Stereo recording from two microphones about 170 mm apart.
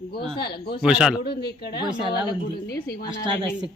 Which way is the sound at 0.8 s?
5° right (ahead or behind).